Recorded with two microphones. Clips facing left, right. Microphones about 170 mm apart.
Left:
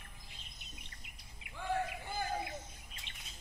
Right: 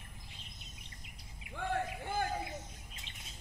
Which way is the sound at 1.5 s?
55° right (ahead or behind).